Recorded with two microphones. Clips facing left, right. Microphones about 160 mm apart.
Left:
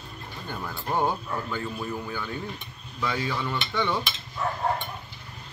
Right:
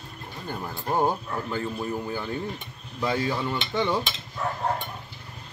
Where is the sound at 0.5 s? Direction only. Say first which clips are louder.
Right 1 dB; 20° right (ahead or behind).